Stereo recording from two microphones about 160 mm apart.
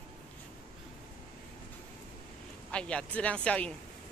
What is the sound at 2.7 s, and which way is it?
Speech, 5° left (ahead or behind).